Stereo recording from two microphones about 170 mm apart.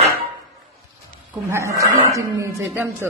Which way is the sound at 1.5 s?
15° right (ahead or behind).